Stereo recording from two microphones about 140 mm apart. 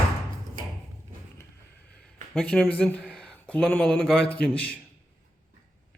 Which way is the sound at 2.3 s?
5° left (ahead or behind).